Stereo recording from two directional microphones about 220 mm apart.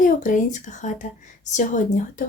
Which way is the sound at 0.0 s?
35° left (ahead or behind).